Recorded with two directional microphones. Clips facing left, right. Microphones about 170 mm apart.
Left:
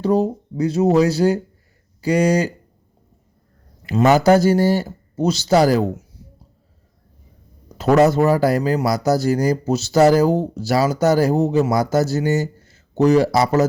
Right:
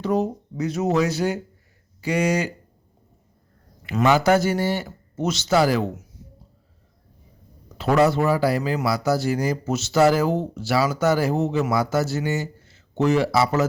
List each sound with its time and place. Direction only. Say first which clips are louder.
0.0 s speech: left 5 dB; 35° left (ahead or behind)
3.8 s speech: left 5 dB; 40° left (ahead or behind)
7.8 s speech: left 4 dB; 45° left (ahead or behind)